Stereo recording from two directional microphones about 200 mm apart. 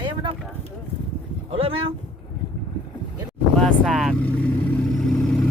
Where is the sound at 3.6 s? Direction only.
Centre (ahead or behind).